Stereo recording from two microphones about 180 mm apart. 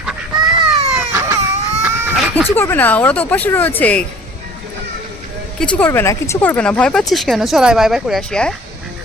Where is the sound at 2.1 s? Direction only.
Centre (ahead or behind).